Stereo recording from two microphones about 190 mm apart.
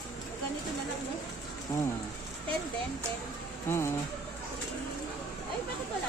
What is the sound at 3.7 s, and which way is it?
Speech, 15° left (ahead or behind).